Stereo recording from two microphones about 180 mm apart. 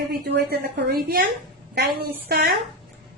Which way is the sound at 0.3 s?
60° right (ahead or behind).